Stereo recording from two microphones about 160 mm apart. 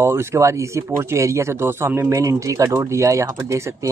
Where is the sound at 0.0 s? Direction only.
15° right (ahead or behind).